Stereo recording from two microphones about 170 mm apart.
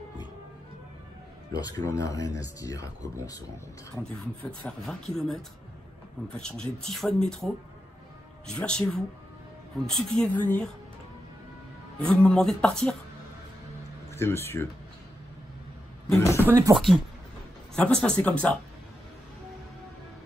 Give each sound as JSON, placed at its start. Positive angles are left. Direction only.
{"t": 1.6, "sound": "speech", "side_deg": 20}
{"t": 4.5, "sound": "speech", "side_deg": 5}
{"t": 12.0, "sound": "speech", "side_deg": 5}
{"t": 14.1, "sound": "speech", "side_deg": 15}
{"t": 16.2, "sound": "a sound", "side_deg": 15}
{"t": 16.4, "sound": "speech", "side_deg": -20}
{"t": 17.7, "sound": "speech", "side_deg": 5}